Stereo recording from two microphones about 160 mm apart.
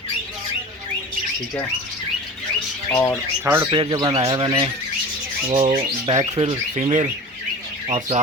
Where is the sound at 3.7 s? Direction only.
30° right (ahead or behind).